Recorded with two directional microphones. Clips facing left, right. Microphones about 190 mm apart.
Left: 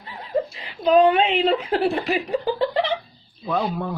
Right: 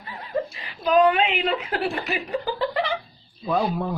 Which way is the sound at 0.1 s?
30° left (ahead or behind).